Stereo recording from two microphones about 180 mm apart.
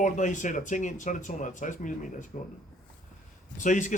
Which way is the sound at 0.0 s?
45° left (ahead or behind).